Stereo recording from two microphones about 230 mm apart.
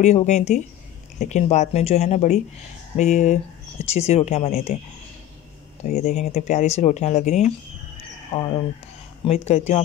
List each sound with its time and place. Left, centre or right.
0.0 s speech: left
5.9 s speech: left